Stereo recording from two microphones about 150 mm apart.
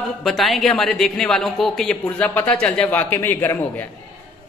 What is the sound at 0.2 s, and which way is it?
Speech, centre (ahead or behind).